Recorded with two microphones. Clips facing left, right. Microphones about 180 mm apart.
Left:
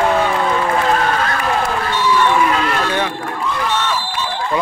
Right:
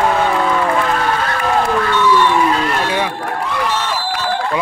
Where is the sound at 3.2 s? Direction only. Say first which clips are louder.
Right 1 dB; 70° right (ahead or behind).